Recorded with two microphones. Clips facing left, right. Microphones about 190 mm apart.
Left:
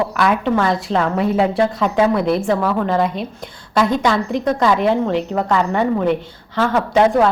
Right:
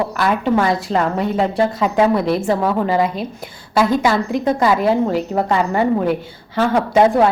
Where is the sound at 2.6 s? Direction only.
20° right (ahead or behind).